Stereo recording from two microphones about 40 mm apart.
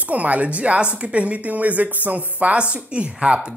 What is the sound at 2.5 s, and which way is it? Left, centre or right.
Speech, right.